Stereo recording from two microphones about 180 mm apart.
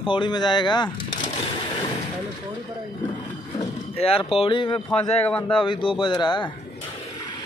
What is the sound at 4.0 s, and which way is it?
Speech, 30° left (ahead or behind).